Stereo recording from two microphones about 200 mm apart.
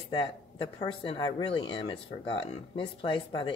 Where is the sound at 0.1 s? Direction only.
25° left (ahead or behind).